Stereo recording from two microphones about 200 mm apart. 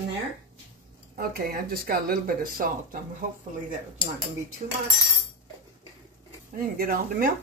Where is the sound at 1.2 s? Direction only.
50° right (ahead or behind).